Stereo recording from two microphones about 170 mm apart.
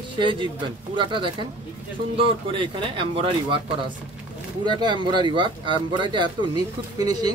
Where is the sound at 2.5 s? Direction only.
30° right (ahead or behind).